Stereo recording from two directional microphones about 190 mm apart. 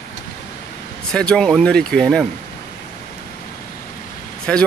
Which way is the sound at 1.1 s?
5° left (ahead or behind).